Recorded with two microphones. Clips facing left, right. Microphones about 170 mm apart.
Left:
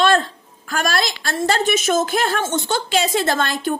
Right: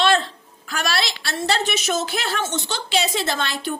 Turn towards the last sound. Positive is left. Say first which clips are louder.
# left 5 dB
turn(degrees=50)  # may be behind; listen again after turning